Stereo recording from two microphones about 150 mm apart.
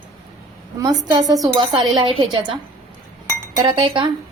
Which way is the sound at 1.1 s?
25° right (ahead or behind).